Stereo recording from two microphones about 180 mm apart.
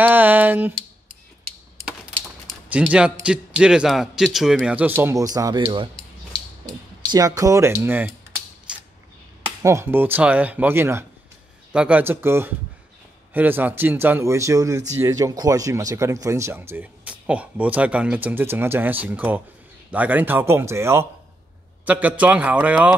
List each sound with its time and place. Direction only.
0.0 s a sound: 10° right (ahead or behind)
2.7 s a man's voice: 5° right (ahead or behind)
7.1 s speech: 20° right (ahead or behind)
8.7 s creak: 5° right (ahead or behind)
9.6 s speech: 15° right (ahead or behind)